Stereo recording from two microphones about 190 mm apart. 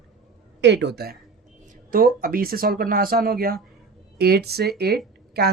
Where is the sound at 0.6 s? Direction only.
65° right (ahead or behind).